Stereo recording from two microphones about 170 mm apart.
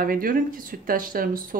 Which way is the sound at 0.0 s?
55° right (ahead or behind).